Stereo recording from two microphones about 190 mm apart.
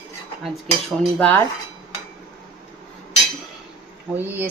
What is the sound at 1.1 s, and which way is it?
Dishes, 10° left (ahead or behind).